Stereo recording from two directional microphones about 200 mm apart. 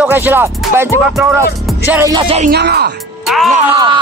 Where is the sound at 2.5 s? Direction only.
55° right (ahead or behind).